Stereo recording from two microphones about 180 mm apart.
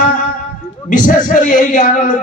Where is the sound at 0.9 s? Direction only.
45° left (ahead or behind).